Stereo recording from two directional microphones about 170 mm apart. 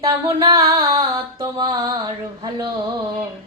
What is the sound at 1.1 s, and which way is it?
Female singing, 20° right (ahead or behind).